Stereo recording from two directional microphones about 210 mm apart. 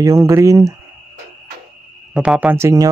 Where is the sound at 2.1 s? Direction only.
5° right (ahead or behind).